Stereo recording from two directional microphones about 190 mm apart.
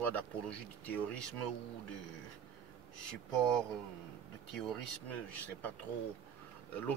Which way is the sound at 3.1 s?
5° left (ahead or behind).